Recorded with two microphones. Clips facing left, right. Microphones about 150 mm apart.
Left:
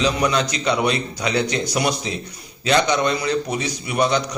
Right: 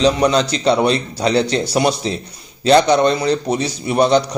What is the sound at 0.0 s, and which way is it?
A man's voice, 30° right (ahead or behind).